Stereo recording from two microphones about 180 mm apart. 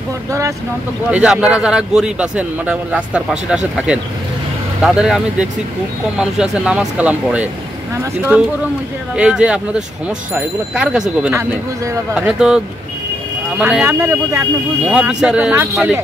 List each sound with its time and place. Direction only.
1.1 s a man's voice: 5° right (ahead or behind)
11.3 s speech: 15° right (ahead or behind)
12.1 s a man's voice: 5° right (ahead or behind)
14.9 s a man's voice: 5° right (ahead or behind)